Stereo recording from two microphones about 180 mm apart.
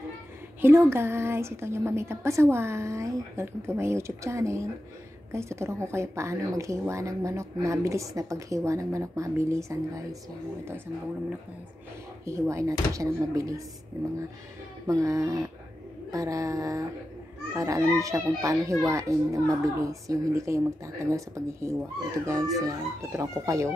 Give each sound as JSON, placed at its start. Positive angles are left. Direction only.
{"t": 0.6, "sound": "speech", "side_deg": -15}
{"t": 12.3, "sound": "speech", "side_deg": -15}
{"t": 14.9, "sound": "speech", "side_deg": -20}